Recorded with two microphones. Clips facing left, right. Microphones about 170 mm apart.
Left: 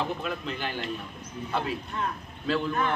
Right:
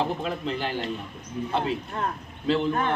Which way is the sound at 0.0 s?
30° right (ahead or behind).